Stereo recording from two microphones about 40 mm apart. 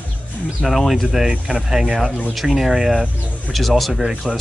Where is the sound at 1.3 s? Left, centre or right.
Right.